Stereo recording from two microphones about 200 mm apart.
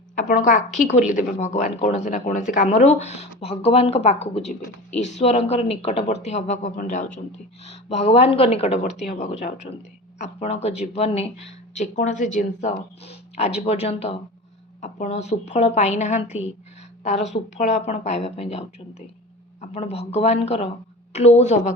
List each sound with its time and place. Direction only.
0.2 s speech: 40° left (ahead or behind)